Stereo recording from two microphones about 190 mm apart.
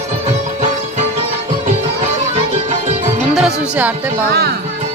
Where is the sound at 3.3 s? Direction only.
5° right (ahead or behind).